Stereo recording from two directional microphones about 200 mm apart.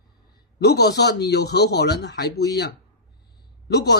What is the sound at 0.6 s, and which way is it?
A man's voice, 55° left (ahead or behind).